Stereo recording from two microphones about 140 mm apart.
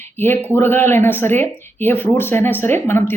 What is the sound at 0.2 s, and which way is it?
A woman's voice, 15° left (ahead or behind).